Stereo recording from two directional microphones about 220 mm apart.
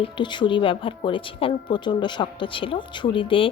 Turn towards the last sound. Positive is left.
turn(degrees=25)  # may be behind; listen again after turning